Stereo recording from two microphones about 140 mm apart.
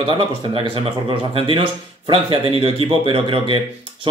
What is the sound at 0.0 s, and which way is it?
Speech, 40° right (ahead or behind).